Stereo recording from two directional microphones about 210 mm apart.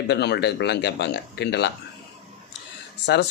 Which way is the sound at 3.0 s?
55° left (ahead or behind).